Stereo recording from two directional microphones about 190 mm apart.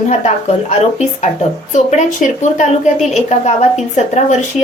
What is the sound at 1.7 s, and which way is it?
Speech, 40° left (ahead or behind).